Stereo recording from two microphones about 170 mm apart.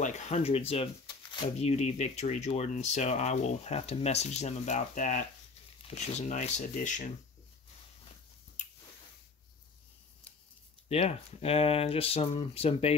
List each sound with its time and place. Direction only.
0.0 s speech: 45° left (ahead or behind)
10.9 s speech: 35° left (ahead or behind)